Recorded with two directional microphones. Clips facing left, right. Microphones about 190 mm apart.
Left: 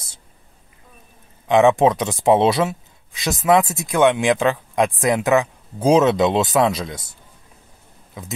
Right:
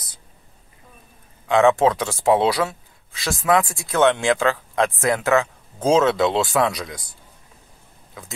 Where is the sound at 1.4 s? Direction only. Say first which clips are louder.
Left 2 dB; 20° left (ahead or behind).